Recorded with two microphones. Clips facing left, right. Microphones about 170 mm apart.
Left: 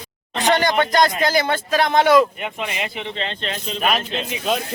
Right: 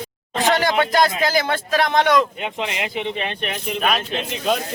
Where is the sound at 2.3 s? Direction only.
20° right (ahead or behind).